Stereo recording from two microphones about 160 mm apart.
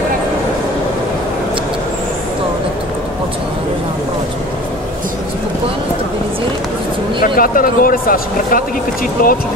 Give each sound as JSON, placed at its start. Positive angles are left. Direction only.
{"t": 7.3, "sound": "speech", "side_deg": 60}